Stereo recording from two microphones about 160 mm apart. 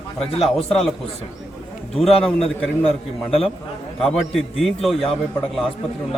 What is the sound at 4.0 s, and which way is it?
A man's voice, centre (ahead or behind).